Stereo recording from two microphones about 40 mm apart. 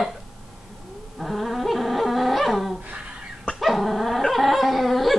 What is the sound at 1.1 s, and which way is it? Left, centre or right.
Dog, centre.